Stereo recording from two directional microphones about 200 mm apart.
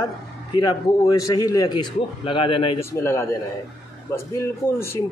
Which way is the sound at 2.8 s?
15° left (ahead or behind).